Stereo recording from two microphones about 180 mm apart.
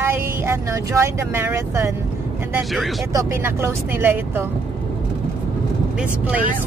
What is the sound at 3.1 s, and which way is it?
Speech, 15° right (ahead or behind).